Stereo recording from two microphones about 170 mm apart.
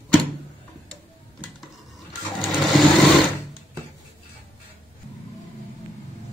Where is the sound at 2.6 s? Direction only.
Centre (ahead or behind).